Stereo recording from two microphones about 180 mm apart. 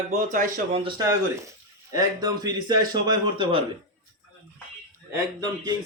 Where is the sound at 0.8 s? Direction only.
20° right (ahead or behind).